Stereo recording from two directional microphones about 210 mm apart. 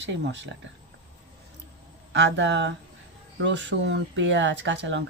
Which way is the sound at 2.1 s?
55° right (ahead or behind).